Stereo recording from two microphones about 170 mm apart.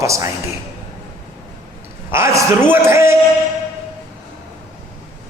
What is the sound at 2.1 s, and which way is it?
A man's voice, 15° right (ahead or behind).